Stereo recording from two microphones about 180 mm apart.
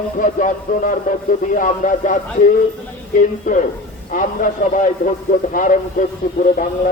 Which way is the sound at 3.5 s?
50° left (ahead or behind).